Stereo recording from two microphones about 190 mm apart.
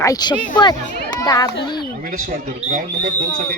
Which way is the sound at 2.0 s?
45° right (ahead or behind).